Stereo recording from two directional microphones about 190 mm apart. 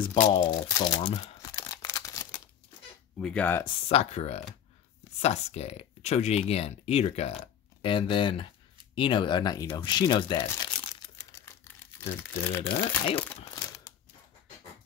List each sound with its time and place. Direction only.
0.4 s speech: 20° left (ahead or behind)
1.4 s tearing: 20° left (ahead or behind)
3.2 s speech: 5° left (ahead or behind)
3.6 s speech: 30° left (ahead or behind)
8.9 s a sound: 25° left (ahead or behind)
12.6 s speech: 15° left (ahead or behind)
13.5 s crushing: 15° left (ahead or behind)